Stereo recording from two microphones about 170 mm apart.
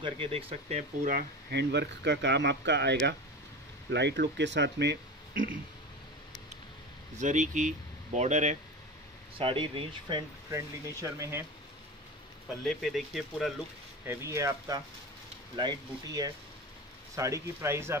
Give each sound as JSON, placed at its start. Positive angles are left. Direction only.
{"t": 0.0, "sound": "speech", "side_deg": -35}
{"t": 1.5, "sound": "speech", "side_deg": -80}
{"t": 7.2, "sound": "speech", "side_deg": -45}
{"t": 9.4, "sound": "speech", "side_deg": -30}
{"t": 10.5, "sound": "speech", "side_deg": -20}
{"t": 12.6, "sound": "speech", "side_deg": 0}
{"t": 14.0, "sound": "speech", "side_deg": -15}